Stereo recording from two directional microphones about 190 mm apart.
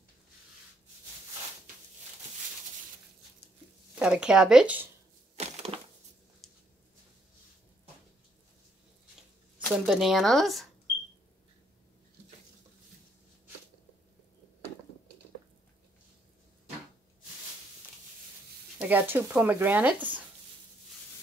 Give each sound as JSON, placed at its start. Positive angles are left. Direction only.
{"t": 4.0, "sound": "speech", "side_deg": -5}
{"t": 5.3, "sound": "a sound", "side_deg": -35}
{"t": 9.7, "sound": "speech", "side_deg": 0}
{"t": 18.8, "sound": "speech", "side_deg": -10}